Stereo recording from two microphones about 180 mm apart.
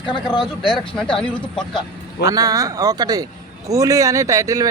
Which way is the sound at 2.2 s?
20° right (ahead or behind).